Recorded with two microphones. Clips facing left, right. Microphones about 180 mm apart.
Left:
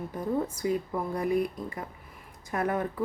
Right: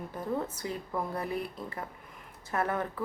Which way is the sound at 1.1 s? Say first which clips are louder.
Left 7 dB; 15° left (ahead or behind).